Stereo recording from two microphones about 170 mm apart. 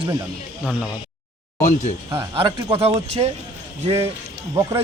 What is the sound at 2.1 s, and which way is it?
Speech, 25° right (ahead or behind).